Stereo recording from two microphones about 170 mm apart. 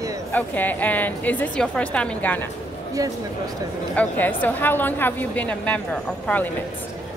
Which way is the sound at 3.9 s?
10° left (ahead or behind).